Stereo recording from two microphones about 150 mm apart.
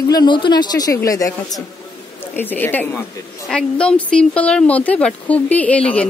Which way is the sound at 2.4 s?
10° left (ahead or behind).